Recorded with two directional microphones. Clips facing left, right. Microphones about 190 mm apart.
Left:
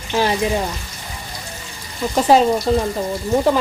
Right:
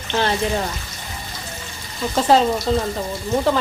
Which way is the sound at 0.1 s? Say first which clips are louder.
Left 2 dB; 10° left (ahead or behind).